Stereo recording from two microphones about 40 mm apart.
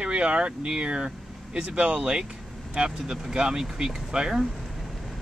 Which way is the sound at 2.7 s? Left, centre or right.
Centre.